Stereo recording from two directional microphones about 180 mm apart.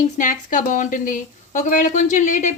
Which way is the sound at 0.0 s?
45° left (ahead or behind).